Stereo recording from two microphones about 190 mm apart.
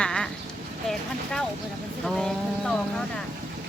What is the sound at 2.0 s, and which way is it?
Speech, 5° left (ahead or behind).